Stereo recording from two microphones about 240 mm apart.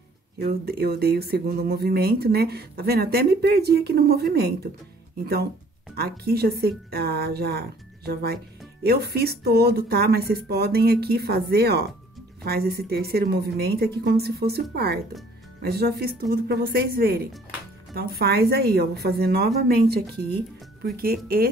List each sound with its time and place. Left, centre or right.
0.4 s speech: right
20.8 s speech: right